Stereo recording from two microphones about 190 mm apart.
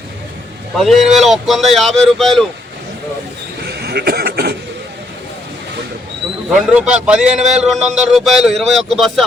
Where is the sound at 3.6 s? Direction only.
55° right (ahead or behind).